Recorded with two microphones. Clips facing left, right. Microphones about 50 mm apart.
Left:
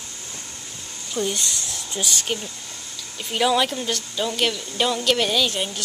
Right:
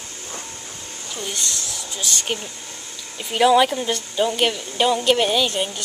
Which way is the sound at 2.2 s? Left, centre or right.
Centre.